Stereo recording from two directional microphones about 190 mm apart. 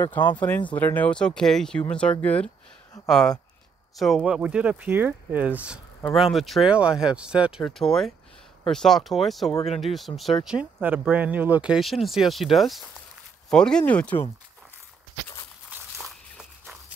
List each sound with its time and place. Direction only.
0.0 s speech: 20° left (ahead or behind)
0.4 s speech: 10° left (ahead or behind)
15.7 s walk: centre (ahead or behind)